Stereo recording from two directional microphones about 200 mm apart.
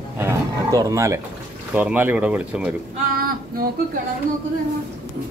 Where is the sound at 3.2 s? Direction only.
45° right (ahead or behind).